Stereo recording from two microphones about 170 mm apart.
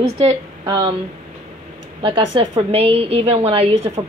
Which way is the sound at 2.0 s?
30° right (ahead or behind).